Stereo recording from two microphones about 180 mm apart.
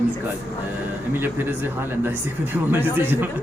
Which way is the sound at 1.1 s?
10° right (ahead or behind).